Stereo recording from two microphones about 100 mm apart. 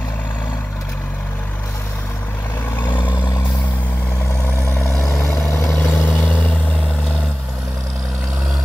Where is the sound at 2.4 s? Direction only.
20° left (ahead or behind).